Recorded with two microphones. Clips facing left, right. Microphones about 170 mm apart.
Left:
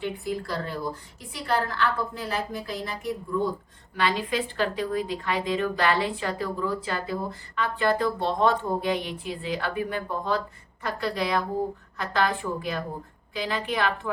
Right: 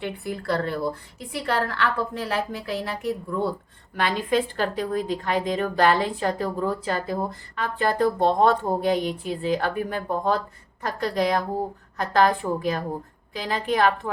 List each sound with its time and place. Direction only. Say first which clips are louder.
0.0 s a woman's voice: even; 60° right (ahead or behind)
3.9 s a woman's voice: right 3 dB; 50° right (ahead or behind)